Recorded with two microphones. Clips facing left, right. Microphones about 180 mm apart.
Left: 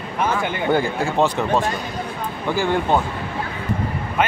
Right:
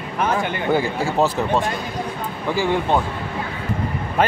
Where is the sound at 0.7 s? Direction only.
5° right (ahead or behind).